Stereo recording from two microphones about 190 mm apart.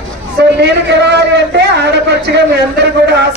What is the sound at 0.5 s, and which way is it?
A man's voice, 65° right (ahead or behind).